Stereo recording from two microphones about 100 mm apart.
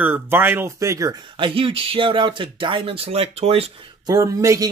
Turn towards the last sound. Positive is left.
turn(degrees=-30)  # may be behind; listen again after turning